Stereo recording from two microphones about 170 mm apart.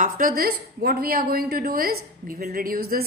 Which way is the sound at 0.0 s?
55° right (ahead or behind).